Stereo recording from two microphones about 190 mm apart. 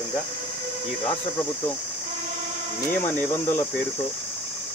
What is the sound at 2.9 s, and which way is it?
Speech, 10° left (ahead or behind).